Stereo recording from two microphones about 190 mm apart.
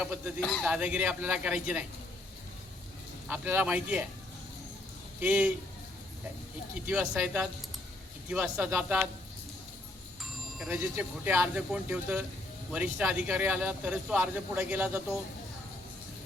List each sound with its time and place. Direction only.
0.0 s a man's voice: 5° right (ahead or behind)
3.2 s speech: 10° right (ahead or behind)
5.2 s speech: 5° right (ahead or behind)
6.8 s a man's voice: 5° right (ahead or behind)
10.6 s speech: 5° right (ahead or behind)